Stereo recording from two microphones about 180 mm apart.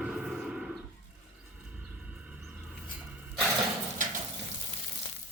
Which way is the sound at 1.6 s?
5° right (ahead or behind).